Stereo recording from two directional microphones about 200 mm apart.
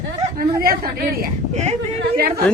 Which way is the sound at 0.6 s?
50° right (ahead or behind).